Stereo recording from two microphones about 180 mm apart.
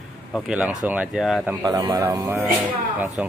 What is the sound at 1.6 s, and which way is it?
Speech, 20° right (ahead or behind).